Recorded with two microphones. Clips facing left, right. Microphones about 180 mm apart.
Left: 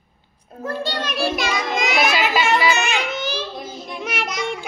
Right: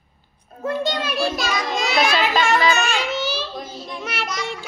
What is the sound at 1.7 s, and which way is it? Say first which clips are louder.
Child singing: left 1 dB; 20° left (ahead or behind).